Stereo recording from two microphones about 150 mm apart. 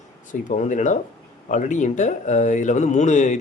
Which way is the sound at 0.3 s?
55° left (ahead or behind).